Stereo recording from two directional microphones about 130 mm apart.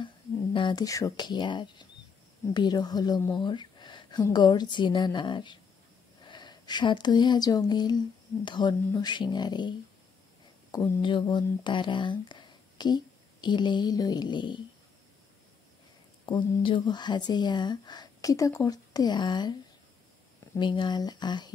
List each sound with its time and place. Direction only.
0.0 s speech: 40° left (ahead or behind)
16.3 s speech: 40° left (ahead or behind)
20.5 s speech: 35° left (ahead or behind)